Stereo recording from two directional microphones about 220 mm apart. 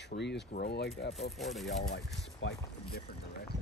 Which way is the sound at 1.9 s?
50° left (ahead or behind).